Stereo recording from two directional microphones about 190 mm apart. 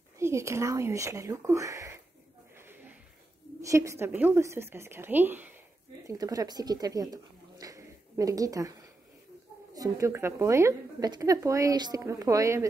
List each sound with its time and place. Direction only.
0.2 s a woman's voice: 15° right (ahead or behind)
2.5 s a sound: 10° right (ahead or behind)
3.6 s a woman's voice: 15° right (ahead or behind)
9.8 s a woman's voice: 15° right (ahead or behind)